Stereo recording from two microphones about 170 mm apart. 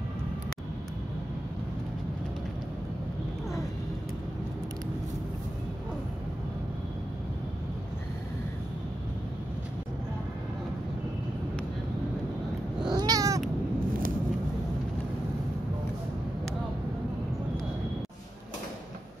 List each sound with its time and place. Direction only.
12.9 s cat: 25° right (ahead or behind)